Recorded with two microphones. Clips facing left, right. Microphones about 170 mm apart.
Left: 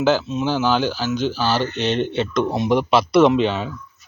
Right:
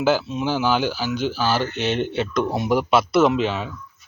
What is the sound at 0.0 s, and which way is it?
Speech, 10° right (ahead or behind).